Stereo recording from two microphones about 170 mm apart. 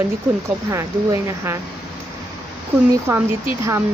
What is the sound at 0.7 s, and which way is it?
Speech, 15° right (ahead or behind).